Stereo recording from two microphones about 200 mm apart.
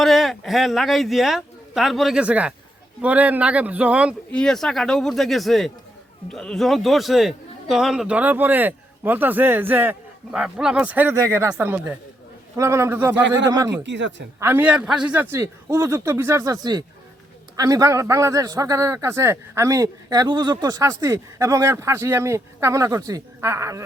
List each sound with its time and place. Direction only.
0.0 s a man's voice: centre (ahead or behind); by 13.8 s 15° right (ahead or behind)
13.8 s speech: 60° right (ahead or behind)
14.3 s a man's voice: 10° right (ahead or behind)